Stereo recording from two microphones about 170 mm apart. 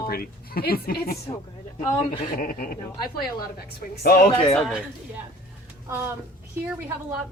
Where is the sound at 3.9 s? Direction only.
65° left (ahead or behind).